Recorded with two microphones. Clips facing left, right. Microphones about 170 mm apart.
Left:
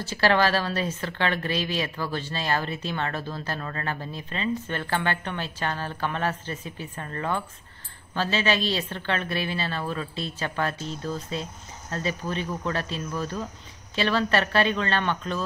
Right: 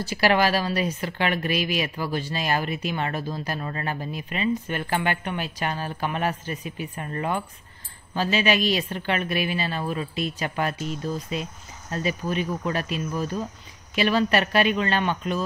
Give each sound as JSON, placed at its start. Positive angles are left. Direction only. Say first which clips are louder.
{"t": 0.0, "sound": "speech", "louder": "right 1 dB", "side_deg": -10}